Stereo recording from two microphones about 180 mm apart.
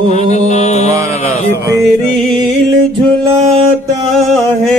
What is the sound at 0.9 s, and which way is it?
Mantra, 15° right (ahead or behind).